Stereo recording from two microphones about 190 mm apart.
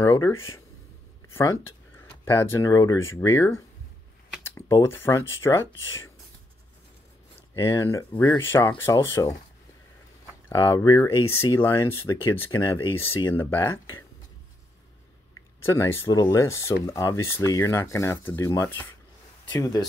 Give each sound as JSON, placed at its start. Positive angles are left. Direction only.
{"t": 0.0, "sound": "speech", "side_deg": 15}
{"t": 7.5, "sound": "speech", "side_deg": 15}
{"t": 10.5, "sound": "speech", "side_deg": 20}
{"t": 15.6, "sound": "speech", "side_deg": 15}